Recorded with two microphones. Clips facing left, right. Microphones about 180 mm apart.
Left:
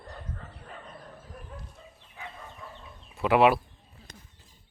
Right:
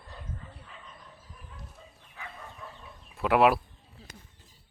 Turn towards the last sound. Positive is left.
turn(degrees=0)  # may be behind; listen again after turning